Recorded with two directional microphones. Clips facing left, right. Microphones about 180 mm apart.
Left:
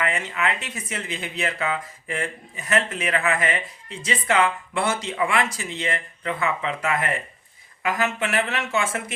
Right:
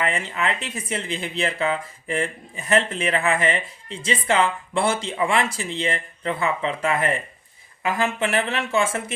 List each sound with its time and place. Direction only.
0.0 s speech: 30° right (ahead or behind)